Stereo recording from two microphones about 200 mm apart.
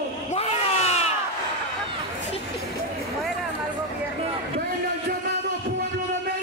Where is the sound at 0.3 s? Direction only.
30° left (ahead or behind).